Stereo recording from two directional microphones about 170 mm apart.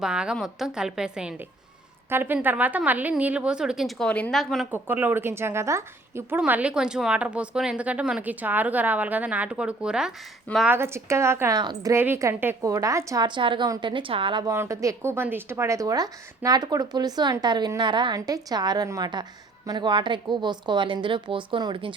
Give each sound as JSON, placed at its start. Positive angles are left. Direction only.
{"t": 0.0, "sound": "a woman's voice", "side_deg": -5}
{"t": 4.7, "sound": "a woman's voice", "side_deg": -10}
{"t": 14.5, "sound": "speech", "side_deg": -15}